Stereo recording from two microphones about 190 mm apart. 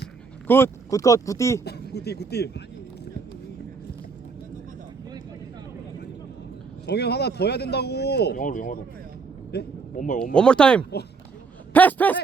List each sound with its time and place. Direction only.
0.4 s speech: 10° left (ahead or behind)
1.6 s speech: 60° left (ahead or behind)
6.8 s speech: 60° left (ahead or behind); by 8.8 s 45° left (ahead or behind)
9.5 s speech: 60° left (ahead or behind)
9.9 s speech: 45° left (ahead or behind)
10.3 s a man's voice: 5° left (ahead or behind)